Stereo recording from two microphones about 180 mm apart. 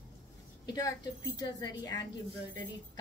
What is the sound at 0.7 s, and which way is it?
A woman's voice, 20° left (ahead or behind).